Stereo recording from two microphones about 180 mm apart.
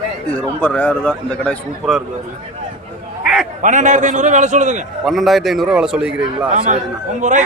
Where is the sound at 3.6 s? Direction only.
45° right (ahead or behind).